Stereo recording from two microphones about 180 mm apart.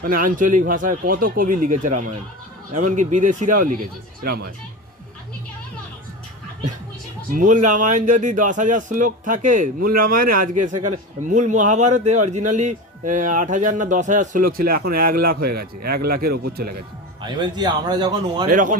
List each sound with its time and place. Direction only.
0.0 s speech: 50° right (ahead or behind)
7.3 s speech: 45° right (ahead or behind)
17.2 s speech: 25° right (ahead or behind)
18.4 s speech: 45° right (ahead or behind)